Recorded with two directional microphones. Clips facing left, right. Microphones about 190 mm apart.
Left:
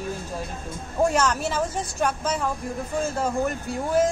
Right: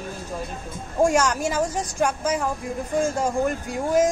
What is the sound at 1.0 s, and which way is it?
A woman's voice, 10° right (ahead or behind).